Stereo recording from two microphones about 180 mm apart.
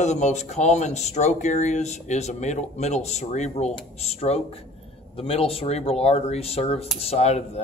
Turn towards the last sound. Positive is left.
turn(degrees=35)  # may be behind; listen again after turning